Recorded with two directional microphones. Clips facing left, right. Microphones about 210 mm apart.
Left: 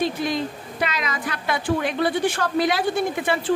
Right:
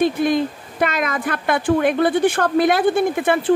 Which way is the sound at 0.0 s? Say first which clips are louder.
Right 6 dB; 55° right (ahead or behind).